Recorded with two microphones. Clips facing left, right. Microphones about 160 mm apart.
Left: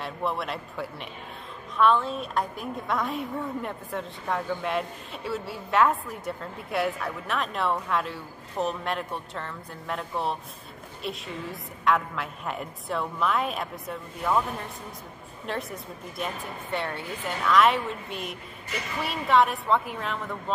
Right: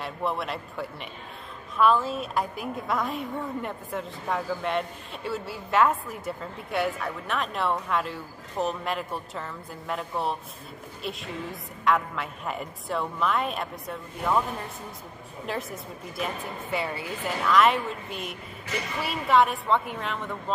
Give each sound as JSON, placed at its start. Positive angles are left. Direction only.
{"t": 0.0, "sound": "a woman's voice", "side_deg": 0}
{"t": 15.4, "sound": "a woman's voice", "side_deg": 0}